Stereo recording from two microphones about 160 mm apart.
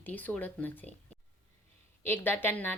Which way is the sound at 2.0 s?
15° left (ahead or behind).